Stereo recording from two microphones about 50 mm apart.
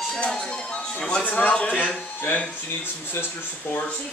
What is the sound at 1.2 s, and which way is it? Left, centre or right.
Speech, left.